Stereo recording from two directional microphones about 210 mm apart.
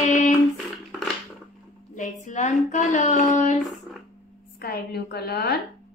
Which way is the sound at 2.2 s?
35° left (ahead or behind).